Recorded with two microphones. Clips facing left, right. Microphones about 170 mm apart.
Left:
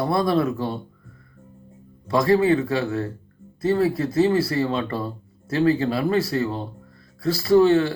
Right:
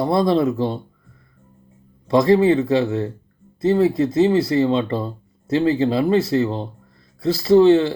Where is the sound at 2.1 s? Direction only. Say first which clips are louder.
Right 4 dB; 20° right (ahead or behind).